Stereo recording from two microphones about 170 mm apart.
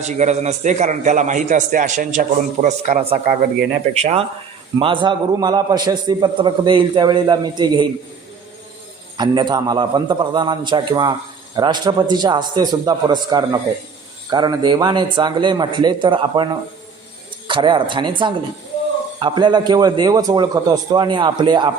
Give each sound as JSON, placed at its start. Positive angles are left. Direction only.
{"t": 0.0, "sound": "a man's voice", "side_deg": -45}
{"t": 9.1, "sound": "a man's voice", "side_deg": -25}